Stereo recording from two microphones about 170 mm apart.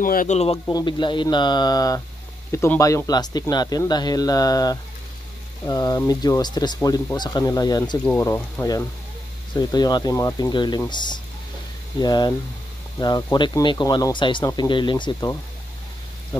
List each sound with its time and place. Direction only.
0.0 s a man's voice: 50° left (ahead or behind)
0.7 s speech: 25° left (ahead or behind)
8.0 s speech: 10° left (ahead or behind)